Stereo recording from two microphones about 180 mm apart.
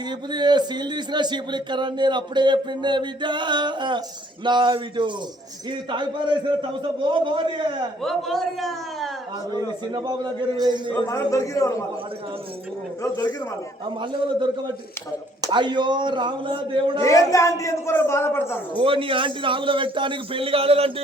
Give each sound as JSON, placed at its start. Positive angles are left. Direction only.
{"t": 0.3, "sound": "a man's voice", "side_deg": -25}
{"t": 8.0, "sound": "a man's voice", "side_deg": 0}
{"t": 9.9, "sound": "a man's voice", "side_deg": -20}
{"t": 10.9, "sound": "a man's voice", "side_deg": 15}
{"t": 13.0, "sound": "speech", "side_deg": 20}
{"t": 14.0, "sound": "a man's voice", "side_deg": -25}
{"t": 17.0, "sound": "a man's voice", "side_deg": 20}
{"t": 18.7, "sound": "a man's voice", "side_deg": -30}